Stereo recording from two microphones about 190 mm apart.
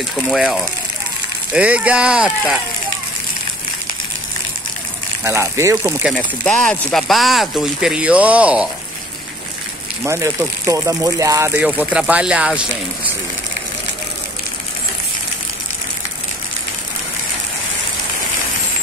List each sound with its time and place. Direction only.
0.3 s speech: centre (ahead or behind)
5.2 s speech: 15° right (ahead or behind)
6.1 s speech: 5° left (ahead or behind)
10.0 s speech: 15° right (ahead or behind)
11.5 s speech: 5° right (ahead or behind)